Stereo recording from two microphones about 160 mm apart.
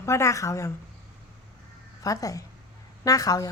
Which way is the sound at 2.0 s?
20° left (ahead or behind).